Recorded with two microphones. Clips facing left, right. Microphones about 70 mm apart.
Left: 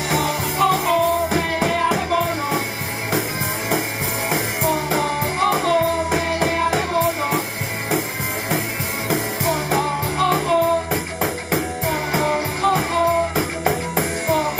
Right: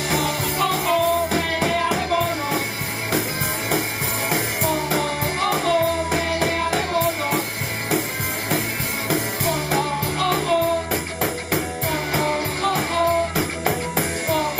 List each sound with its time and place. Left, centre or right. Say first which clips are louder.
0.1 s music: left 2 dB; centre
4.3 s music: left 2 dB; centre
9.1 s music: left 2 dB; centre